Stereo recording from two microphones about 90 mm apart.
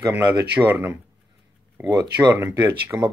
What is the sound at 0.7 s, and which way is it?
Speech, 25° right (ahead or behind).